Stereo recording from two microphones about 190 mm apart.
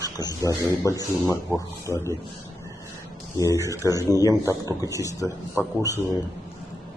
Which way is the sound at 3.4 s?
15° left (ahead or behind).